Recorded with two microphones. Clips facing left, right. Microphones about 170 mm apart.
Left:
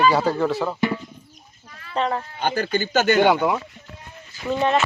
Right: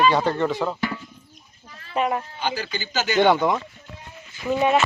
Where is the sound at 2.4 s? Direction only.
55° left (ahead or behind).